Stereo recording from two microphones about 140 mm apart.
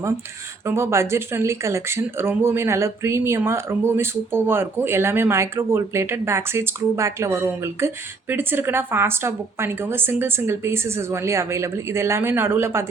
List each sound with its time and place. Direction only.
0.6 s speech: 20° right (ahead or behind)